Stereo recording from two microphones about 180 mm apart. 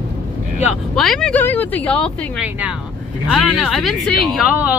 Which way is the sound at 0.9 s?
Centre (ahead or behind).